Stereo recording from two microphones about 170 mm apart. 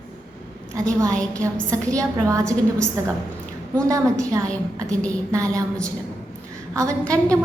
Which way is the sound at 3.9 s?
20° right (ahead or behind).